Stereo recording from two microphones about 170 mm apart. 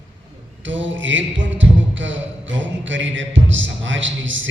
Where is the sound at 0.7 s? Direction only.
90° right.